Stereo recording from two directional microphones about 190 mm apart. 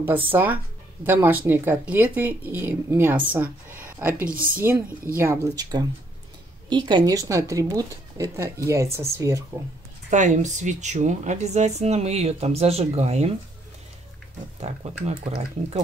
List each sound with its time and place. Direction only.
0.0 s speech: 10° right (ahead or behind)
3.8 s a sound: 10° right (ahead or behind)
5.1 s speech: 15° right (ahead or behind)
10.0 s speech: 40° right (ahead or behind)
14.6 s speech: 30° right (ahead or behind)